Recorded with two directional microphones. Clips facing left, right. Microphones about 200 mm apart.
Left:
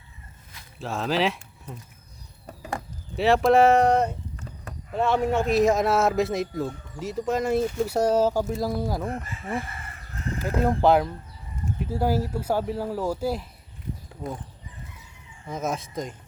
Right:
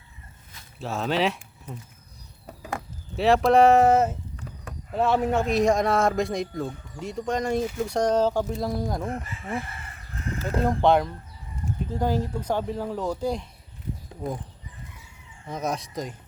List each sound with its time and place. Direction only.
0.8 s speech: centre (ahead or behind)
10.6 s speech: 5° left (ahead or behind)
15.4 s speech: centre (ahead or behind)